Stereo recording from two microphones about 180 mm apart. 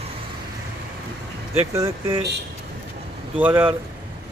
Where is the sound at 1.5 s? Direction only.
15° right (ahead or behind).